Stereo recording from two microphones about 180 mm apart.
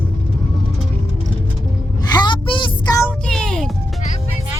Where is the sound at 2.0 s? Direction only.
25° left (ahead or behind).